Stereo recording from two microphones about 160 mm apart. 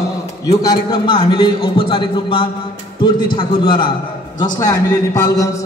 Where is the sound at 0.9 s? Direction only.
30° left (ahead or behind).